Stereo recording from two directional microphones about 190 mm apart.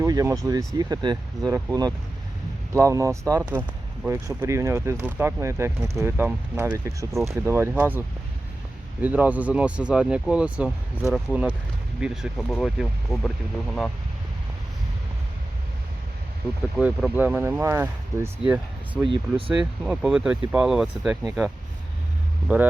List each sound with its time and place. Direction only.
0.0 s speech: 15° right (ahead or behind); by 13.9 s 5° left (ahead or behind)
16.7 s speech: 5° right (ahead or behind)
19.0 s speech: 25° right (ahead or behind)
19.5 s speech: 5° right (ahead or behind)
22.5 s speech: 10° right (ahead or behind)